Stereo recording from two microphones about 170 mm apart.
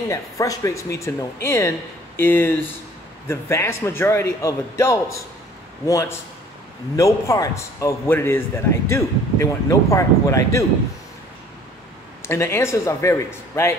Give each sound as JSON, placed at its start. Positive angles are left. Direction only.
{"t": 0.1, "sound": "a man's voice", "side_deg": 20}
{"t": 12.2, "sound": "a man's voice", "side_deg": 15}